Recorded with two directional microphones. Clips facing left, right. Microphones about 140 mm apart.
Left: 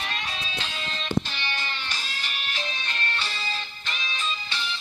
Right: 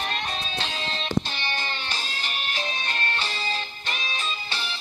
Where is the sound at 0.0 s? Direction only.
40° right (ahead or behind).